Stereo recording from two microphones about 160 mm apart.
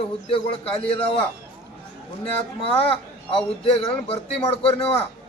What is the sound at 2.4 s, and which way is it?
Speech, 35° left (ahead or behind).